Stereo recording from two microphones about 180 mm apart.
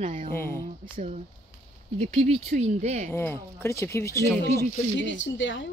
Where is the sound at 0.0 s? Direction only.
45° right (ahead or behind).